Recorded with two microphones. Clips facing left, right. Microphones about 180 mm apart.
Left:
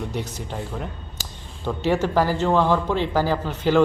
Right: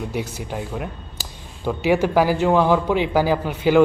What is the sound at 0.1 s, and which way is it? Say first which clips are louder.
Speech: right 3 dB; 10° right (ahead or behind).